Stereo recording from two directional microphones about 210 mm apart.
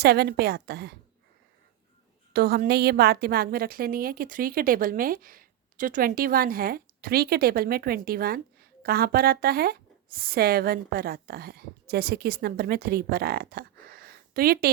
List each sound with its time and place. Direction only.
0.0 s a woman's voice: 50° right (ahead or behind)
2.3 s a woman's voice: 45° right (ahead or behind)